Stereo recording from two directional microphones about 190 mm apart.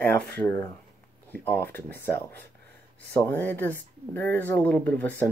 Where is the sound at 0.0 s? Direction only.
10° left (ahead or behind).